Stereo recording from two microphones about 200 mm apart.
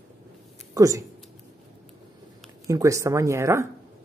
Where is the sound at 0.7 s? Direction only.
15° right (ahead or behind).